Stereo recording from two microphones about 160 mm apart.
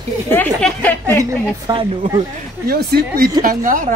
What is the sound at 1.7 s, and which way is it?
Speech, 35° right (ahead or behind).